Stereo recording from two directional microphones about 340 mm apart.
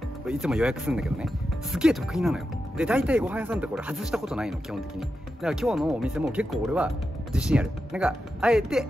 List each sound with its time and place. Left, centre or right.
0.3 s speech: centre